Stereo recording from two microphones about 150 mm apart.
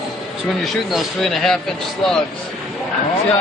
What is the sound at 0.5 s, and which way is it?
Speech, centre (ahead or behind).